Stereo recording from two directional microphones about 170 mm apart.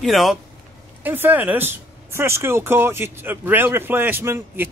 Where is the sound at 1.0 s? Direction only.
10° right (ahead or behind).